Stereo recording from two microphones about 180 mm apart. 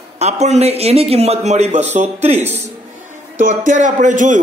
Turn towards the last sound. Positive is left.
turn(degrees=-45)  # may be behind; listen again after turning